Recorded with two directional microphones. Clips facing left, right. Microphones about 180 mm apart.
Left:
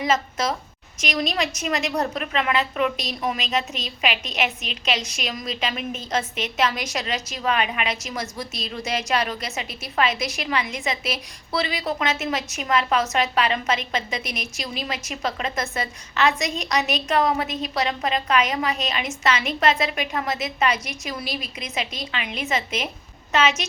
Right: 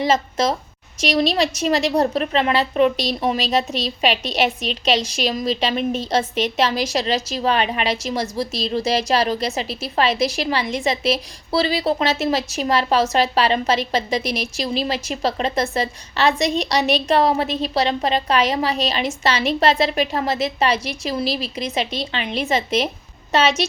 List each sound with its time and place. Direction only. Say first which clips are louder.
0.0 s a woman's voice: right 4 dB; 30° right (ahead or behind)